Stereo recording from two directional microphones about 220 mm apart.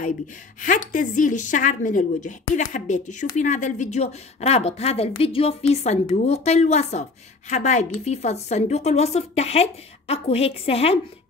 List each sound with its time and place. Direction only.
0.6 s a woman's voice: 35° left (ahead or behind)